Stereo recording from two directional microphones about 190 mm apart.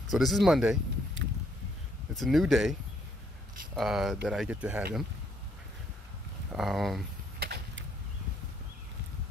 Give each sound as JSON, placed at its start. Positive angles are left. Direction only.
{"t": 0.1, "sound": "speech", "side_deg": 0}
{"t": 2.1, "sound": "speech", "side_deg": 0}
{"t": 6.5, "sound": "speech", "side_deg": 0}
{"t": 7.3, "sound": "vehicle", "side_deg": -55}